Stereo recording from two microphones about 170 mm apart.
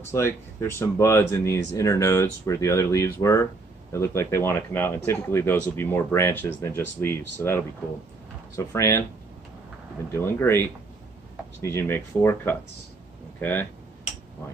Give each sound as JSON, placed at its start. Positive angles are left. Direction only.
{"t": 0.0, "sound": "speech", "side_deg": 15}
{"t": 10.1, "sound": "speech", "side_deg": 15}